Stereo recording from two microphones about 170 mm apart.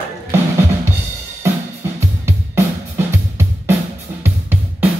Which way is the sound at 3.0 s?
15° right (ahead or behind).